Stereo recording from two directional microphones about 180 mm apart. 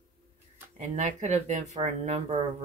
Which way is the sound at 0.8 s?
40° right (ahead or behind).